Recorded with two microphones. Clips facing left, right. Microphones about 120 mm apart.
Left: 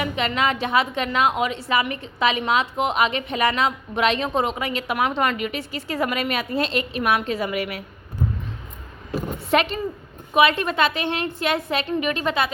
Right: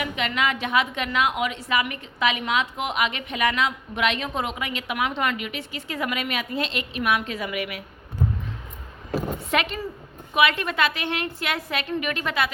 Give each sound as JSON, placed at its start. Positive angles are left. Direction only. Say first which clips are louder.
{"t": 0.0, "sound": "a woman's voice", "louder": "left 3 dB", "side_deg": 35}
{"t": 9.5, "sound": "a woman's voice", "louder": "left 6 dB", "side_deg": 30}